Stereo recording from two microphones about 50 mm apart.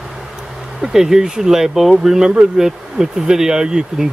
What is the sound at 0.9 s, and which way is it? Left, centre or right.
Speech, centre.